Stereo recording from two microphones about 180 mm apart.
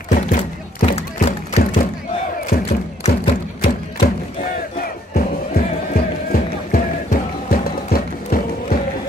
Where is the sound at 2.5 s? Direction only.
55° left (ahead or behind).